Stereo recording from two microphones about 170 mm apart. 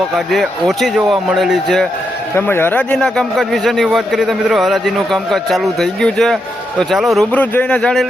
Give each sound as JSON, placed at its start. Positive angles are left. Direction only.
{"t": 0.3, "sound": "a man's voice", "side_deg": 0}
{"t": 2.3, "sound": "a man's voice", "side_deg": 15}